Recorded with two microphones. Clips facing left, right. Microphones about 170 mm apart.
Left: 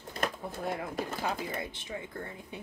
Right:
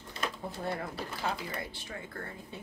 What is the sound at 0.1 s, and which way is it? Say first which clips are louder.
Pigeon: left 3 dB; 50° left (ahead or behind).